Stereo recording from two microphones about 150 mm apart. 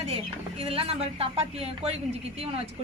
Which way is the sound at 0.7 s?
40° right (ahead or behind).